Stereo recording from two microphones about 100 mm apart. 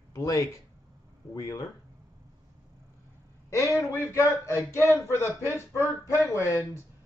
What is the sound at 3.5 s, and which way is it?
Speech, 30° left (ahead or behind).